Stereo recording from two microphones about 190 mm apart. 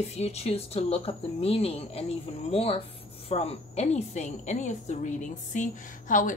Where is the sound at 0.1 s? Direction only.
35° left (ahead or behind).